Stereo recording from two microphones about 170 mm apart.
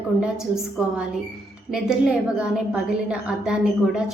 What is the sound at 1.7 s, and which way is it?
A woman's voice, 5° right (ahead or behind).